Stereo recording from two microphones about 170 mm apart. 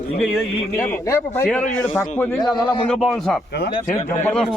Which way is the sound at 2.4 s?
25° left (ahead or behind).